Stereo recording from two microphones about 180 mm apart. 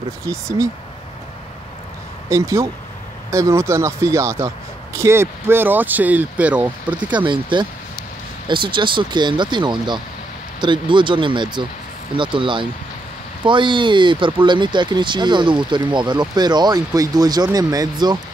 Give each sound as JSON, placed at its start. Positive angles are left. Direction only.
{"t": 0.3, "sound": "speech", "side_deg": -15}
{"t": 2.2, "sound": "speech", "side_deg": -15}
{"t": 7.2, "sound": "speech", "side_deg": -25}